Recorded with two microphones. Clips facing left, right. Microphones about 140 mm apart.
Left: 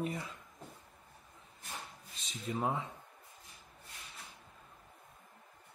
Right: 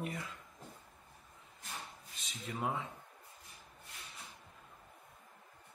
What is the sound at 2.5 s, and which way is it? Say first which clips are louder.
Speech: left 3 dB; 30° left (ahead or behind).